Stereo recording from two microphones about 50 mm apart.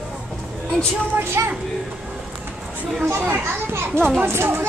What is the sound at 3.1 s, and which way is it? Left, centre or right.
A child's voice, right.